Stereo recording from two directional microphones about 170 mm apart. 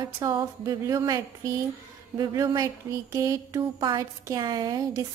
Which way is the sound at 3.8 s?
20° right (ahead or behind).